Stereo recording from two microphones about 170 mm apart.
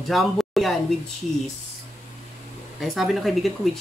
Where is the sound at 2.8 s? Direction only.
Centre (ahead or behind).